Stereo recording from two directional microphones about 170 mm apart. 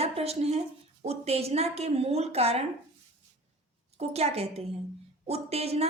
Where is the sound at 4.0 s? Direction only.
35° right (ahead or behind).